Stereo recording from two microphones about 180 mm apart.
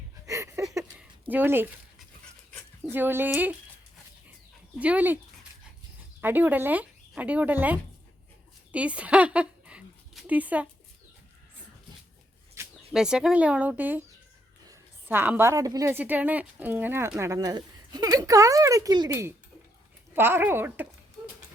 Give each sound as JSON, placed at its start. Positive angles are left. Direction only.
{"t": 0.3, "sound": "a sound", "side_deg": -15}
{"t": 2.9, "sound": "a woman's voice", "side_deg": -10}
{"t": 4.8, "sound": "a woman's voice", "side_deg": -10}
{"t": 6.2, "sound": "a woman's voice", "side_deg": -10}
{"t": 8.7, "sound": "a sound", "side_deg": -5}
{"t": 12.9, "sound": "a woman's voice", "side_deg": -5}